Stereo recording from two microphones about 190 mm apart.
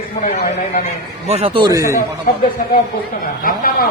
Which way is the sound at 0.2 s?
50° left (ahead or behind).